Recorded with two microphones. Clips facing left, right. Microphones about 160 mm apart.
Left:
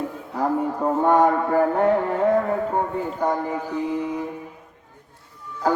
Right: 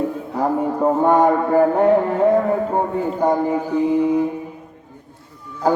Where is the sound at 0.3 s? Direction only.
20° right (ahead or behind).